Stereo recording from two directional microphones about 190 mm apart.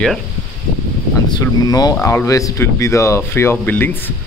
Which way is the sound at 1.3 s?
20° left (ahead or behind).